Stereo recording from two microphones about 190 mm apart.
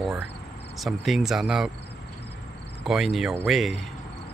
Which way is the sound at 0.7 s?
Centre (ahead or behind).